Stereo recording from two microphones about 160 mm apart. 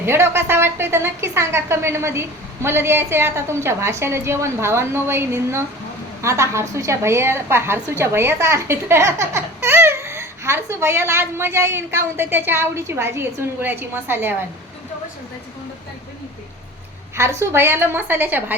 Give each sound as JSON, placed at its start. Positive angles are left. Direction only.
{"t": 0.0, "sound": "a woman's voice", "side_deg": -15}
{"t": 17.2, "sound": "a woman's voice", "side_deg": -15}